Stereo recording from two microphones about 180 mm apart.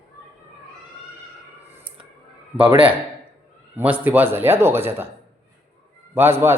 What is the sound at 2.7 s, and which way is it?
Speech, 30° right (ahead or behind).